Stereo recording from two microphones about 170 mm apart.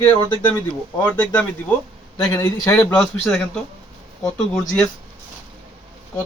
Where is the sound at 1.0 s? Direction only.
10° left (ahead or behind).